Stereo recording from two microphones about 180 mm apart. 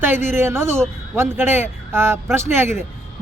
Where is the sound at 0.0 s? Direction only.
10° right (ahead or behind).